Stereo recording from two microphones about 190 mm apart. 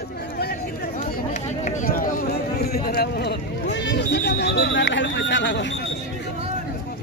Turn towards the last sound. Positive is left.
turn(degrees=70)  # may be behind; listen again after turning